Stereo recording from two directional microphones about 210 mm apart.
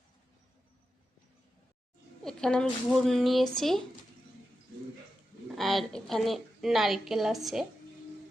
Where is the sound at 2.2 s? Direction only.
5° left (ahead or behind).